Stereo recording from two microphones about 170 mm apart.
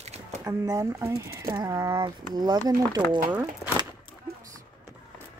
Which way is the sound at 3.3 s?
10° right (ahead or behind).